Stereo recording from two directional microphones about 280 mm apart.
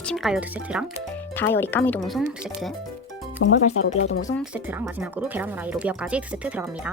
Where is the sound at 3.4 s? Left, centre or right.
Left.